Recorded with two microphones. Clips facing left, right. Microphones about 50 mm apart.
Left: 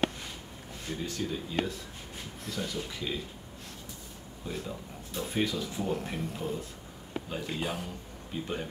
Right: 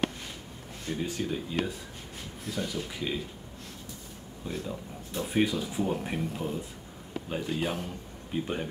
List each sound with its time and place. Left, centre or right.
1.0 s speech: centre
4.5 s speech: centre